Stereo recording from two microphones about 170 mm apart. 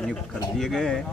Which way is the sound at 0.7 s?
5° left (ahead or behind).